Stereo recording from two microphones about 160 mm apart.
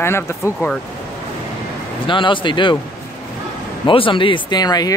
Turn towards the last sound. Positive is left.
turn(degrees=25)  # may be behind; listen again after turning